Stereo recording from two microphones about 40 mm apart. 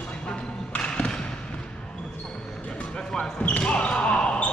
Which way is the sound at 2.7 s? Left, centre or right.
Left.